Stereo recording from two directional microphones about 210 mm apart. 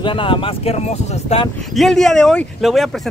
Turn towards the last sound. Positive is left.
turn(degrees=0)  # may be behind; listen again after turning